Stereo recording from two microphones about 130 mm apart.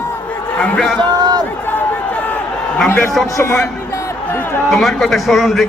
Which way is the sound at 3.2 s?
25° left (ahead or behind).